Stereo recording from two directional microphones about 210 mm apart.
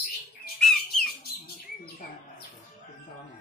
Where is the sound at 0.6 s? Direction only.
Centre (ahead or behind).